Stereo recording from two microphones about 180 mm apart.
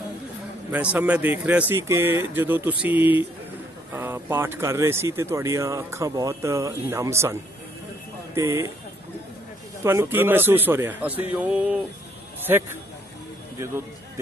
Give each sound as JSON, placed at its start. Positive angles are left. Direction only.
{"t": 0.7, "sound": "speech", "side_deg": -10}
{"t": 8.4, "sound": "speech", "side_deg": -15}
{"t": 9.8, "sound": "speech", "side_deg": -10}